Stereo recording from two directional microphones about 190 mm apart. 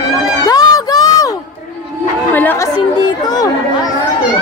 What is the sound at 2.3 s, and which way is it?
Chatter, 10° left (ahead or behind).